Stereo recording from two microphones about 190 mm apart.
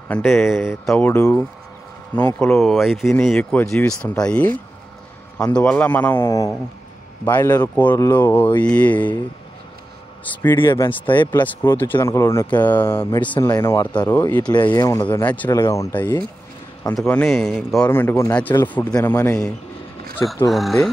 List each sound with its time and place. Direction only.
0.1 s speech: 10° left (ahead or behind)
5.6 s speech: 5° left (ahead or behind)
10.3 s speech: 10° left (ahead or behind)
14.5 s speech: 25° left (ahead or behind); by 20.9 s centre (ahead or behind)